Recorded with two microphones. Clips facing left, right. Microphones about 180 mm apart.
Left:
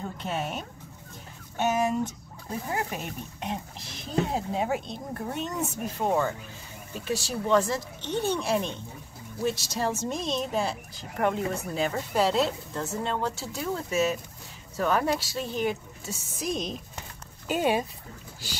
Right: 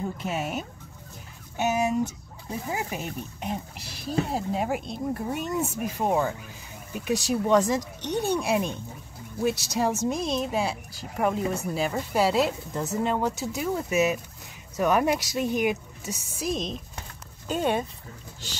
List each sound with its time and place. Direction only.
0.2 s speech: 5° right (ahead or behind); by 17.8 s 10° left (ahead or behind)